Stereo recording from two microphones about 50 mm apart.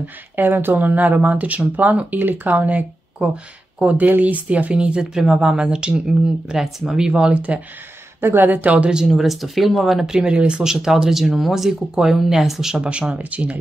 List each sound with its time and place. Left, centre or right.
0.0 s speech: right
5.1 s speech: centre; by 7.6 s right
8.2 s speech: right
8.9 s speech: centre; by 10.6 s right
10.6 s speech: centre
13.1 s speech: right